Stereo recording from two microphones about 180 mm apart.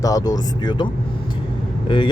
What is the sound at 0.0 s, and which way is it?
Speech, 20° left (ahead or behind).